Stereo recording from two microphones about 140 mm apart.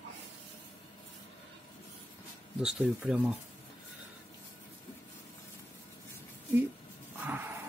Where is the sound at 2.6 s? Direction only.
5° right (ahead or behind).